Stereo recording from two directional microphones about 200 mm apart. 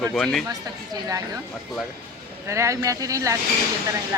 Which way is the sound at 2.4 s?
15° right (ahead or behind).